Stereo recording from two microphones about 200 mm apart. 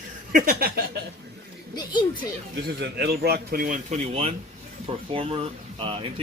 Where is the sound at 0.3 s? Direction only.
45° right (ahead or behind).